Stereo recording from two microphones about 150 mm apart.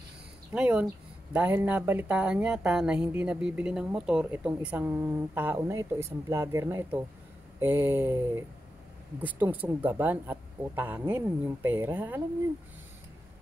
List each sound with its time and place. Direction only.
0.5 s speech: 10° right (ahead or behind)